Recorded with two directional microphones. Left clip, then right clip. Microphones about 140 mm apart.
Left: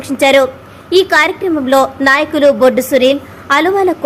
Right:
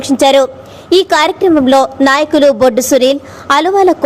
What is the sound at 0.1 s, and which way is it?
A woman's voice, 35° right (ahead or behind).